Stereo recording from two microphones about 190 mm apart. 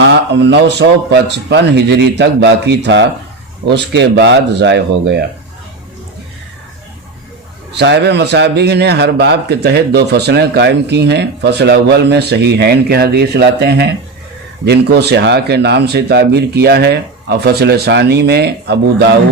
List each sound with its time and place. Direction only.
0.0 s a man's voice: 65° right (ahead or behind)
7.8 s a man's voice: 65° right (ahead or behind)